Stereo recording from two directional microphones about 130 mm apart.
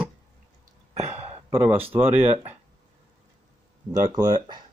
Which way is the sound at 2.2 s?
50° right (ahead or behind).